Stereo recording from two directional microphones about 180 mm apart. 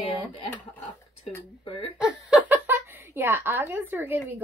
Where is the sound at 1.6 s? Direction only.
30° left (ahead or behind).